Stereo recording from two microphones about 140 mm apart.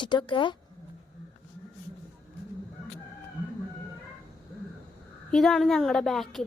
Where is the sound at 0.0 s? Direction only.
35° left (ahead or behind).